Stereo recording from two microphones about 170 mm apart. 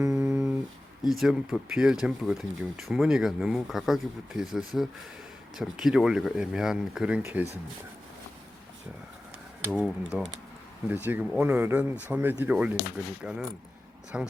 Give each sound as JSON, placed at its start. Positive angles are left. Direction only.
{"t": 0.0, "sound": "a sound", "side_deg": -15}
{"t": 1.0, "sound": "speech", "side_deg": 0}
{"t": 9.7, "sound": "speech", "side_deg": -5}
{"t": 14.1, "sound": "speech", "side_deg": -5}